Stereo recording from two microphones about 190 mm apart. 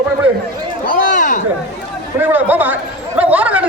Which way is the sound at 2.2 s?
10° right (ahead or behind).